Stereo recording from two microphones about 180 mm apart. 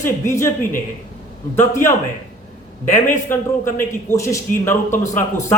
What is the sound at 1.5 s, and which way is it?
Speech, 15° left (ahead or behind).